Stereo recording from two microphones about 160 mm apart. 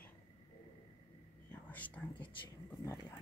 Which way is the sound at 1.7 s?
10° left (ahead or behind).